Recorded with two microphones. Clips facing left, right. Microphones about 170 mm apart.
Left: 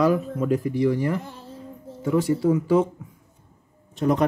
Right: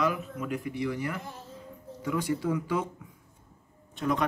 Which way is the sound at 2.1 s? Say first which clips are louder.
Left 8 dB; 25° left (ahead or behind).